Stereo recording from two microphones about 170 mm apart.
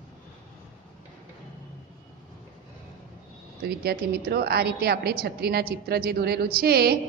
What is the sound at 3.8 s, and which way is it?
A woman's voice, 65° right (ahead or behind).